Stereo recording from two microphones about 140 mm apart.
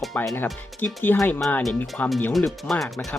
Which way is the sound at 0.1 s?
10° left (ahead or behind).